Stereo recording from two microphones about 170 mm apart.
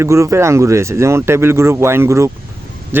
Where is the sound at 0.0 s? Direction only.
15° right (ahead or behind).